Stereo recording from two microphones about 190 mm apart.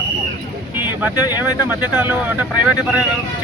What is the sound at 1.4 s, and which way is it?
Speech, 10° right (ahead or behind).